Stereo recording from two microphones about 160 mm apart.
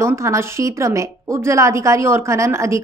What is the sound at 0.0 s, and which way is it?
A woman's voice, 15° right (ahead or behind).